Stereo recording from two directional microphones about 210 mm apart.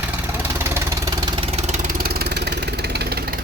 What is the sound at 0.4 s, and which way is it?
Vehicle, 10° right (ahead or behind).